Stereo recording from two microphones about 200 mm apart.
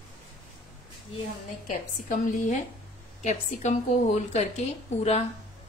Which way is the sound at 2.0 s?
40° left (ahead or behind).